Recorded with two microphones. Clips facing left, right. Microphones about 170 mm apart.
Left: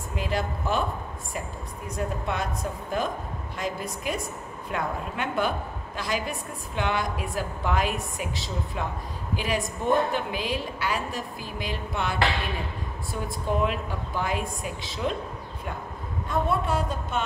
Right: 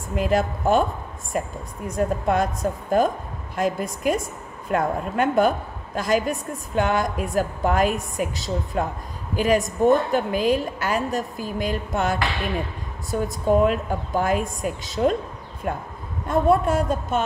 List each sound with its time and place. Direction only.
0.1 s a woman's voice: 50° right (ahead or behind)